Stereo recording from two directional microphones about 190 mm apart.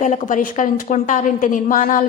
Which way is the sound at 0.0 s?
40° left (ahead or behind).